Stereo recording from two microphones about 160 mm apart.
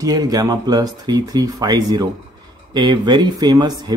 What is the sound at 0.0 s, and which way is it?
A man's voice, 25° right (ahead or behind).